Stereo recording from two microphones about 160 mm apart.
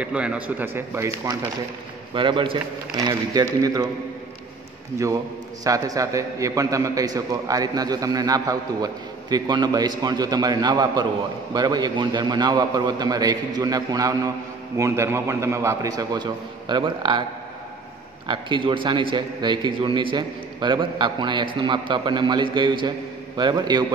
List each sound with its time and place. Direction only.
0.0 s speech: 5° right (ahead or behind)
2.1 s a man's voice: 30° right (ahead or behind)
5.6 s a man's voice: 20° right (ahead or behind)
18.3 s a man's voice: 30° right (ahead or behind)